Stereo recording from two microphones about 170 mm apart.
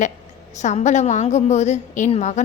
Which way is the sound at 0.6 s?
45° left (ahead or behind).